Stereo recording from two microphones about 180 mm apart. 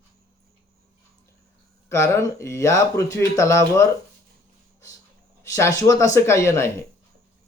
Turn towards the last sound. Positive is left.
turn(degrees=15)  # may be behind; listen again after turning